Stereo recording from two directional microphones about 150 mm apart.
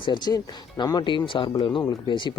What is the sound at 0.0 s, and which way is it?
Speech, 30° left (ahead or behind).